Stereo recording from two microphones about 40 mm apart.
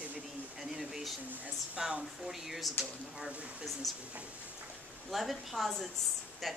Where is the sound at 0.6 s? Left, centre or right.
Centre.